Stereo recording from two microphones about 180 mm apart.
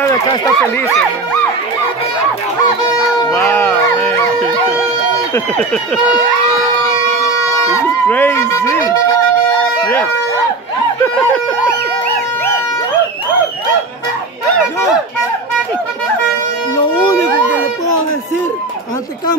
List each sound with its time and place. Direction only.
0.0 s a sound: 20° left (ahead or behind)
3.3 s music: 10° left (ahead or behind)
5.3 s speech: 10° left (ahead or behind)
7.7 s speech: 10° left (ahead or behind)